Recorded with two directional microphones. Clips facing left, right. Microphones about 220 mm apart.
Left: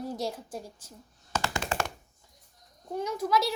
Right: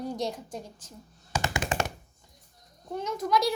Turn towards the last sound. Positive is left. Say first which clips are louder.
# right 1 dB
turn(degrees=5)  # may be behind; listen again after turning